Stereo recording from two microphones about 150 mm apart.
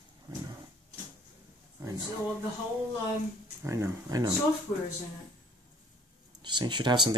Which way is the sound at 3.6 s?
20° right (ahead or behind).